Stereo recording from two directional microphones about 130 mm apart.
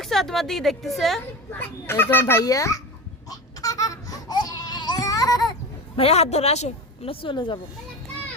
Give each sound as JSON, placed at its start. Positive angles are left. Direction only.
{"t": 0.0, "sound": "a woman's voice", "side_deg": 0}
{"t": 1.5, "sound": "a child's voice", "side_deg": 15}
{"t": 3.2, "sound": "a sound", "side_deg": 25}
{"t": 6.0, "sound": "a woman's voice", "side_deg": 55}